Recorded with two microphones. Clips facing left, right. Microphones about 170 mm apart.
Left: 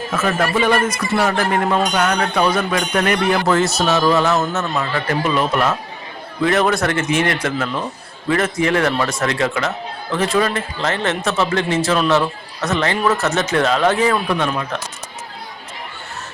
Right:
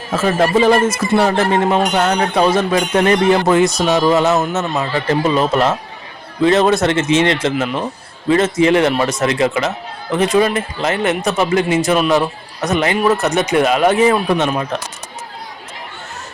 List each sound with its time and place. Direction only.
0.1 s speech: 30° right (ahead or behind)